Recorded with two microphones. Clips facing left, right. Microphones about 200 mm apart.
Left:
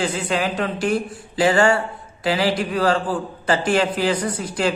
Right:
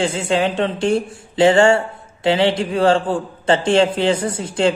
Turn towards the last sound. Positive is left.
turn(degrees=-25)  # may be behind; listen again after turning